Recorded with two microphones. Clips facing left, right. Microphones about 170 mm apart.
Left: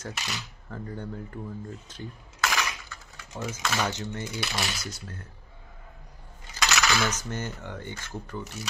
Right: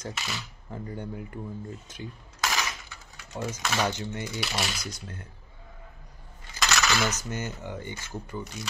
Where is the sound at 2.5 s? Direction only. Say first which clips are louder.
Left 1 dB; 15° right (ahead or behind).